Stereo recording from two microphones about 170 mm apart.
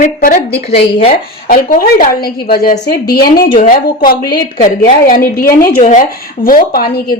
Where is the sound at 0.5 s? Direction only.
35° left (ahead or behind).